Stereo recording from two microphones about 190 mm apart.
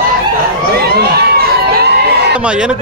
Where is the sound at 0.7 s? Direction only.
55° right (ahead or behind).